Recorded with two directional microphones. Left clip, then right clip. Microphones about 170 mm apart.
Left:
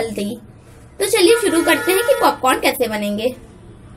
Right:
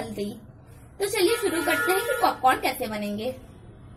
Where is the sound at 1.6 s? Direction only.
45° left (ahead or behind).